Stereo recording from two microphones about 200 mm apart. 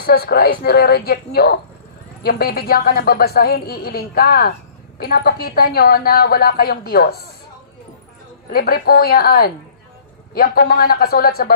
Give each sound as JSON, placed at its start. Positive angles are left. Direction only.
{"t": 0.0, "sound": "a woman's voice", "side_deg": 50}
{"t": 8.5, "sound": "a woman's voice", "side_deg": 50}